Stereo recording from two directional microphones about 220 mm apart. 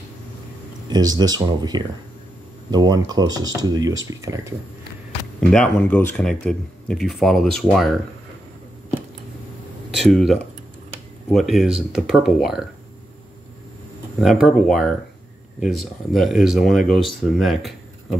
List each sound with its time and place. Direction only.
0.8 s speech: 20° right (ahead or behind)
5.5 s speech: 5° left (ahead or behind)
9.9 s speech: centre (ahead or behind)
14.2 s speech: centre (ahead or behind)